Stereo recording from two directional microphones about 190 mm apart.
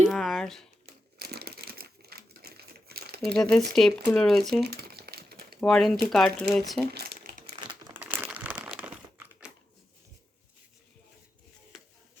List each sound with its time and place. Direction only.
0.1 s a sound: centre (ahead or behind)
0.9 s crumpling: 55° right (ahead or behind)
3.3 s speech: 5° left (ahead or behind)
4.6 s crumpling: 55° right (ahead or behind)
5.5 s speech: centre (ahead or behind)
6.9 s crumpling: 55° right (ahead or behind)
7.6 s crumpling: 25° right (ahead or behind)
7.9 s crumpling: 10° right (ahead or behind)